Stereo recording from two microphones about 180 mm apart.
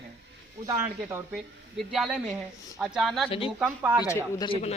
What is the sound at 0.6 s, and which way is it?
Speech, 15° right (ahead or behind).